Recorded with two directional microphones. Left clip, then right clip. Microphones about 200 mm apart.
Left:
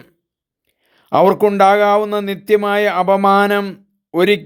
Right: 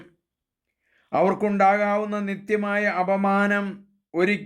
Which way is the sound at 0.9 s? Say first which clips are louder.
Left 9 dB; 40° left (ahead or behind).